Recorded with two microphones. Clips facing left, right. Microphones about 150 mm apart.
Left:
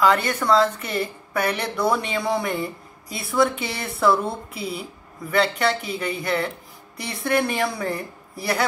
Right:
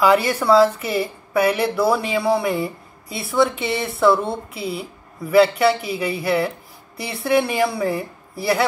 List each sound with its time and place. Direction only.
0.0 s speech: 10° right (ahead or behind)